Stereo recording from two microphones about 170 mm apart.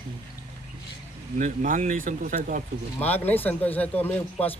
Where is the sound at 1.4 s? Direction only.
50° right (ahead or behind).